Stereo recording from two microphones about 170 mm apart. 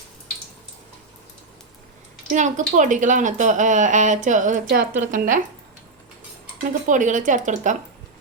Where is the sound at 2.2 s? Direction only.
45° right (ahead or behind).